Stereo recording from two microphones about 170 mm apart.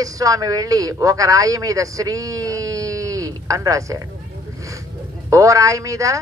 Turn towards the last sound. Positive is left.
turn(degrees=-20)  # may be behind; listen again after turning